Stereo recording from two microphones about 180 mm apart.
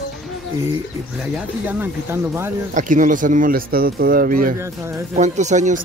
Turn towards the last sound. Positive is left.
turn(degrees=-40)  # may be behind; listen again after turning